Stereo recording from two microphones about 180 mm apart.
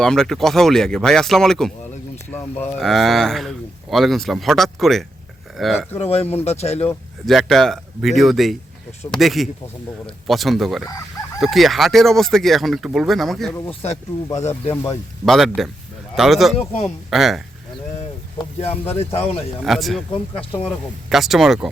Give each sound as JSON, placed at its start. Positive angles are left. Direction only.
{"t": 0.0, "sound": "speech", "side_deg": 5}
{"t": 2.7, "sound": "speech", "side_deg": 0}
{"t": 6.0, "sound": "speech", "side_deg": 35}
{"t": 7.3, "sound": "speech", "side_deg": 0}
{"t": 13.7, "sound": "speech", "side_deg": 30}
{"t": 14.3, "sound": "speech", "side_deg": 15}
{"t": 15.2, "sound": "speech", "side_deg": 0}
{"t": 18.3, "sound": "speech", "side_deg": 35}
{"t": 19.6, "sound": "speech", "side_deg": 0}